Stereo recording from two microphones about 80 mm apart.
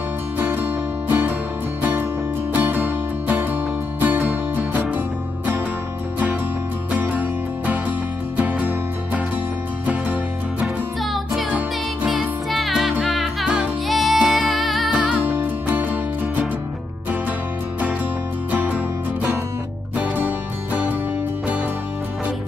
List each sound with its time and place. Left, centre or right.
0.4 s music: right
4.0 s music: right
7.0 s music: right
12.1 s music: centre
15.2 s music: right
18.5 s music: right
20.0 s music: centre